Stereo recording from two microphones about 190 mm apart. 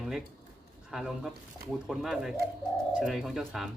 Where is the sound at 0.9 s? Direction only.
Centre (ahead or behind).